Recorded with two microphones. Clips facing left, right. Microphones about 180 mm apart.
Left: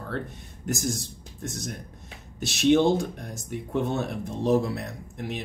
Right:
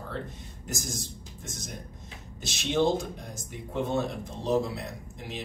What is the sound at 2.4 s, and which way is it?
Speech, 65° left (ahead or behind).